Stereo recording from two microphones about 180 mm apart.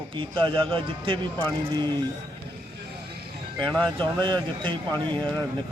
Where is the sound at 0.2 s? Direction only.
30° right (ahead or behind).